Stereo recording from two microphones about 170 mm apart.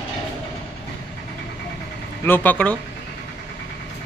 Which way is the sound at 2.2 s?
10° left (ahead or behind).